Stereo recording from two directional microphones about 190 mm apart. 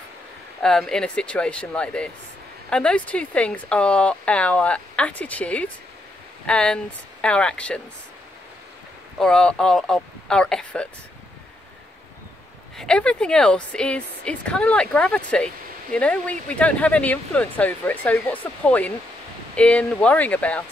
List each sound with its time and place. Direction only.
0.6 s a woman's voice: 5° left (ahead or behind)
9.2 s speech: 5° left (ahead or behind)
12.7 s a woman's voice: 5° left (ahead or behind)